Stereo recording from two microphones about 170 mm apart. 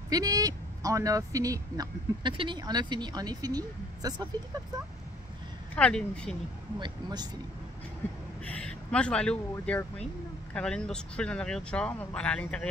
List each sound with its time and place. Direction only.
0.1 s speech: 20° right (ahead or behind)
5.8 s speech: 5° left (ahead or behind)
6.8 s speech: 25° right (ahead or behind)
8.5 s speech: 5° left (ahead or behind)